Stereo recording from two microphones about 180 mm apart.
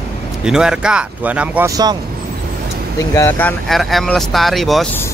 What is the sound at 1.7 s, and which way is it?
Speech, 20° right (ahead or behind).